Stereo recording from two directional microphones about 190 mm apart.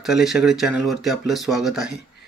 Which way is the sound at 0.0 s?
Centre (ahead or behind).